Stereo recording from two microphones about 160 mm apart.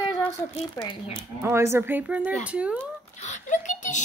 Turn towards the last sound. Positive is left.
turn(degrees=50)  # may be behind; listen again after turning